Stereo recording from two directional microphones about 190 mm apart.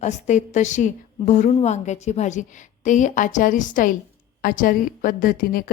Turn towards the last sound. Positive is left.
turn(degrees=50)  # may be behind; listen again after turning